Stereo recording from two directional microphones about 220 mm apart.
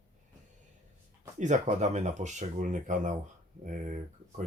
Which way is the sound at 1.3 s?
30° right (ahead or behind).